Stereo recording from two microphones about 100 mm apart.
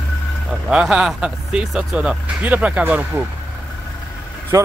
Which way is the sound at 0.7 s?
5° right (ahead or behind).